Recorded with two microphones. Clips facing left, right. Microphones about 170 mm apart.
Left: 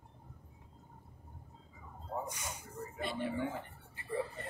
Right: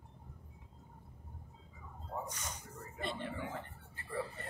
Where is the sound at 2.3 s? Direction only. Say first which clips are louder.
Left 2 dB; 10° left (ahead or behind).